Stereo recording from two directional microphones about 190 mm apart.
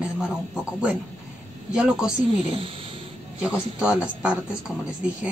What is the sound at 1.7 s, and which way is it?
Speech, 5° right (ahead or behind).